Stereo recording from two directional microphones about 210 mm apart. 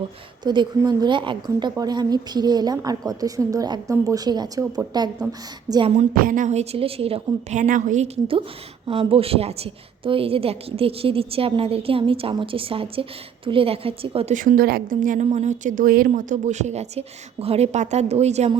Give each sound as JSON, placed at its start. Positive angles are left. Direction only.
{"t": 0.4, "sound": "a woman's voice", "side_deg": -20}
{"t": 14.3, "sound": "speech", "side_deg": -40}